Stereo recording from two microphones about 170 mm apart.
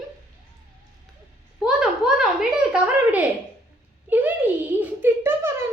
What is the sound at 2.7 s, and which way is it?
A child's voice, 5° right (ahead or behind).